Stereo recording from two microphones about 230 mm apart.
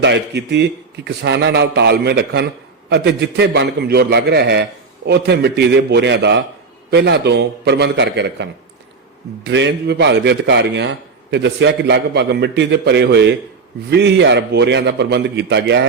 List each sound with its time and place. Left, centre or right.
0.0 s a man's voice: right